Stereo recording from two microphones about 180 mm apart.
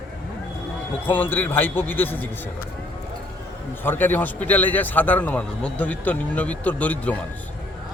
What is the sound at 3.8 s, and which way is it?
A man's voice, 10° left (ahead or behind).